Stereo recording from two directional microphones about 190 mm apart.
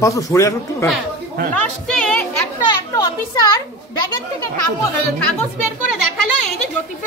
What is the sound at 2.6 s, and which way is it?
Speech, 20° left (ahead or behind).